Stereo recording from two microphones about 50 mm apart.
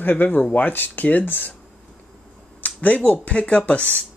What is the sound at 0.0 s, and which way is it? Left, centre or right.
Speech, left.